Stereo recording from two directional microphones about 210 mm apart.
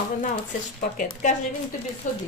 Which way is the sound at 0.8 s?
40° left (ahead or behind).